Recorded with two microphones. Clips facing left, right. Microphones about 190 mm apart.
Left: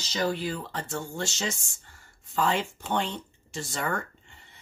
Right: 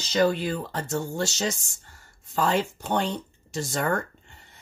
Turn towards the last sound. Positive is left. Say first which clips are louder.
# right 5 dB
turn(degrees=-45)  # may be behind; listen again after turning